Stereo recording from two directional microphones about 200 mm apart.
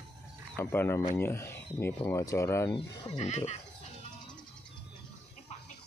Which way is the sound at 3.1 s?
35° left (ahead or behind).